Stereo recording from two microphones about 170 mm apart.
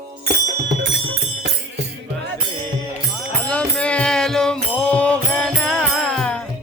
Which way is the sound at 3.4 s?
5° left (ahead or behind).